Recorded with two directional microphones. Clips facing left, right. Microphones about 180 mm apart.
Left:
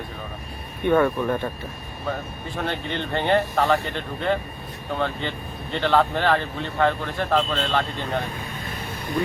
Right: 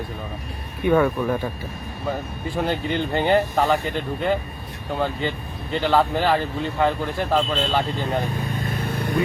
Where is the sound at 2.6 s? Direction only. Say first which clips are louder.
Right 4 dB; 5° right (ahead or behind).